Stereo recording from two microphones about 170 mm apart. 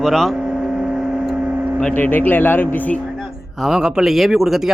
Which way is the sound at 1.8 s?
10° left (ahead or behind).